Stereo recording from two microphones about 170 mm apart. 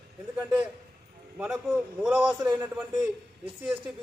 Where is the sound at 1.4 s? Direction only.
5° right (ahead or behind).